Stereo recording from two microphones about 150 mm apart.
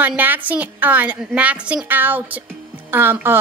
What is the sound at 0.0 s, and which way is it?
A woman's voice, 10° right (ahead or behind).